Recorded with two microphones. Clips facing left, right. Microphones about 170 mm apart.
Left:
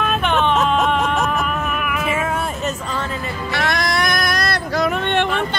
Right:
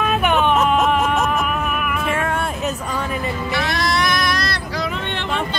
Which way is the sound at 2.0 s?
5° left (ahead or behind).